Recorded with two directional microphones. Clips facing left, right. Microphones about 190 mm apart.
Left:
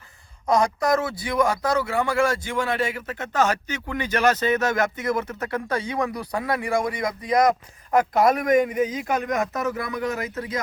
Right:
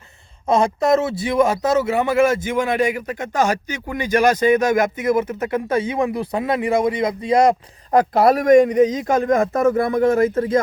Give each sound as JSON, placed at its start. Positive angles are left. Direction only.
{"t": 0.4, "sound": "a man's voice", "side_deg": -25}
{"t": 9.5, "sound": "speech", "side_deg": -50}